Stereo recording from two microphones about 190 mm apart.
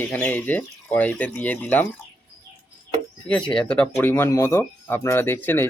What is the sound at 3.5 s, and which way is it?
Speech, 5° left (ahead or behind).